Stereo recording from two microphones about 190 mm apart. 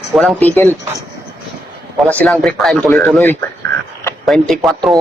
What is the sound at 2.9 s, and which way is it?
A man's voice, 15° left (ahead or behind).